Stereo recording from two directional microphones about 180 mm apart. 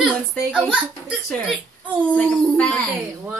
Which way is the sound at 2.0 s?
5° left (ahead or behind).